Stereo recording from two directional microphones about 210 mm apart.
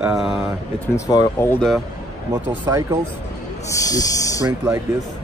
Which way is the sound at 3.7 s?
15° left (ahead or behind).